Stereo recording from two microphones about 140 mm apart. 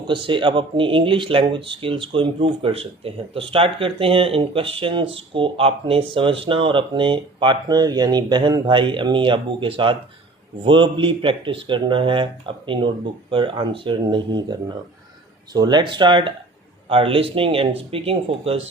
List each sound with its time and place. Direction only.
0.1 s speech: 35° right (ahead or behind)
15.5 s speech: 30° right (ahead or behind)